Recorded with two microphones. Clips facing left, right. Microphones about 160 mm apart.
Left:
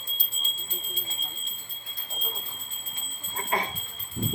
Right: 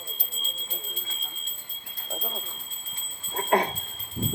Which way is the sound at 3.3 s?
60° right (ahead or behind).